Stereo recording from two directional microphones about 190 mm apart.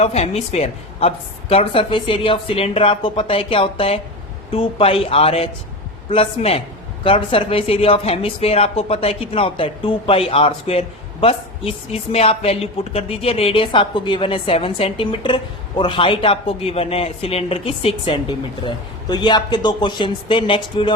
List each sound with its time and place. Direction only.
0.0 s speech: 35° left (ahead or behind)